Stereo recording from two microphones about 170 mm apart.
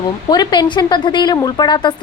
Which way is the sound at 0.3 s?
25° left (ahead or behind).